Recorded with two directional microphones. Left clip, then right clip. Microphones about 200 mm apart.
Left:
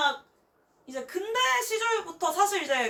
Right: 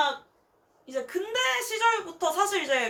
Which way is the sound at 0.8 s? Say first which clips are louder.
Right 2 dB; 10° right (ahead or behind).